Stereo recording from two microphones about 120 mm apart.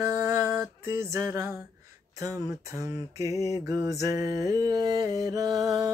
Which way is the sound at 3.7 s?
30° right (ahead or behind).